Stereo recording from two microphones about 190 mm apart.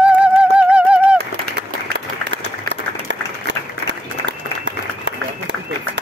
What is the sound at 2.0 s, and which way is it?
Applause, 70° right (ahead or behind).